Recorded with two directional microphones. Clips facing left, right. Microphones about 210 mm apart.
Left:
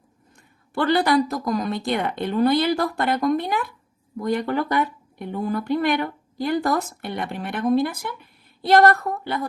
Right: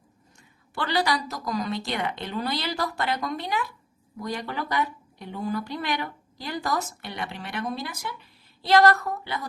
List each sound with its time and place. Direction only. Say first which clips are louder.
0.7 s speech: left 7 dB; 55° left (ahead or behind)